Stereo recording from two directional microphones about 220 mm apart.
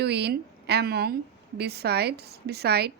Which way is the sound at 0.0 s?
50° right (ahead or behind).